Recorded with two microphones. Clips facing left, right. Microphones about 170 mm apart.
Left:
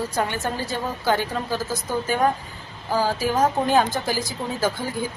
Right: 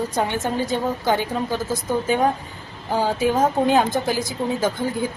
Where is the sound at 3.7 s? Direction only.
Centre (ahead or behind).